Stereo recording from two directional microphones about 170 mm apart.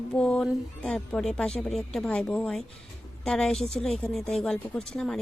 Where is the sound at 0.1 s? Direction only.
5° left (ahead or behind).